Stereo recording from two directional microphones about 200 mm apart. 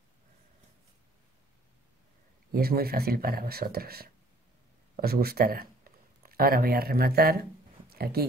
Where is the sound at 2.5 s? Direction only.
50° right (ahead or behind).